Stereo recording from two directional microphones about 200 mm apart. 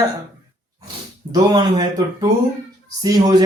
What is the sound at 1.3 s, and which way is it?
Speech, 20° right (ahead or behind).